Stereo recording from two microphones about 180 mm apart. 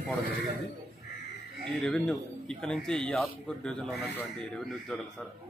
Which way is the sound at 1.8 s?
Centre (ahead or behind).